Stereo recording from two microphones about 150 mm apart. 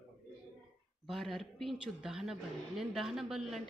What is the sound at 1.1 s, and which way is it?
A woman's voice, centre (ahead or behind).